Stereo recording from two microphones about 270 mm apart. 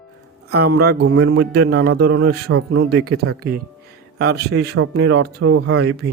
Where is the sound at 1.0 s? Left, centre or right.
Right.